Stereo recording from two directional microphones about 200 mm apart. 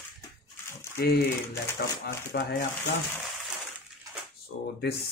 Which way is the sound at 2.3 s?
50° left (ahead or behind).